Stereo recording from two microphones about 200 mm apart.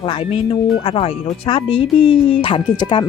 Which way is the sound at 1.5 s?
25° left (ahead or behind).